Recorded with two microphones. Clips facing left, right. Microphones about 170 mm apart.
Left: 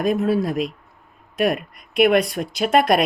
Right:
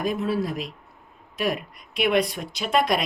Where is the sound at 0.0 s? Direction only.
55° left (ahead or behind).